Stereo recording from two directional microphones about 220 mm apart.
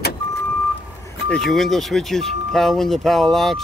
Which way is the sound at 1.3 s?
Centre (ahead or behind).